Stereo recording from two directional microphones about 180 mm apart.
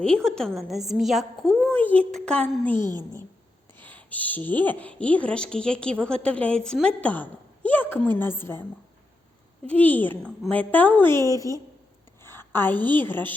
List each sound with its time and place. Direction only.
0.3 s a woman's voice: 5° left (ahead or behind)
2.7 s a woman's voice: 25° right (ahead or behind)
3.8 s a woman's voice: 10° left (ahead or behind)
10.0 s a woman's voice: 10° left (ahead or behind)